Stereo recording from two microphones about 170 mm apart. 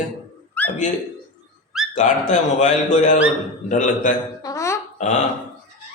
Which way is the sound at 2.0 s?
45° left (ahead or behind).